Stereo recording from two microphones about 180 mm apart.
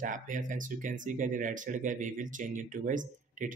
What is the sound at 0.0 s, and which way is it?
Speech, 45° right (ahead or behind).